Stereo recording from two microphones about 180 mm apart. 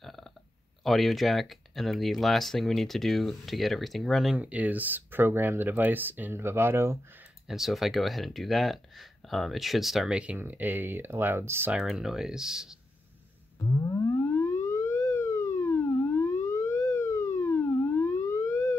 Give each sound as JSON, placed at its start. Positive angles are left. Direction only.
{"t": 0.0, "sound": "a sound", "side_deg": 0}
{"t": 0.8, "sound": "speech", "side_deg": 0}
{"t": 7.4, "sound": "speech", "side_deg": 0}
{"t": 13.8, "sound": "siren", "side_deg": 15}